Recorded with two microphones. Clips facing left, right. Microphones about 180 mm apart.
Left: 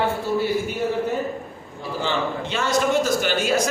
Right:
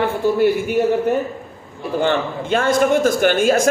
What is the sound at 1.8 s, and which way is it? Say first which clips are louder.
A man's voice: right 6 dB; 55° right (ahead or behind).